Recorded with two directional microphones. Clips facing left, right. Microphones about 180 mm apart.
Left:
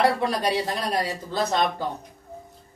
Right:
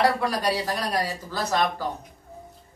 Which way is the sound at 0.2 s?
25° left (ahead or behind).